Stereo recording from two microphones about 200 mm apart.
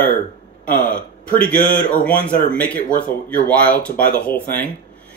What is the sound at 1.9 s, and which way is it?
Speech, 5° left (ahead or behind).